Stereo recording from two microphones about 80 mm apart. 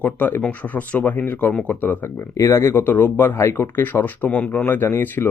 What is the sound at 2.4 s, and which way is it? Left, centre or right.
Speech, left.